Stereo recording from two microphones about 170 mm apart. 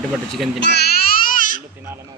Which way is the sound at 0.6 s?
80° left.